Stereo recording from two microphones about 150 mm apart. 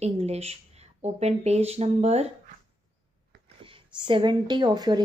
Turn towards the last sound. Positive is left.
turn(degrees=-30)  # may be behind; listen again after turning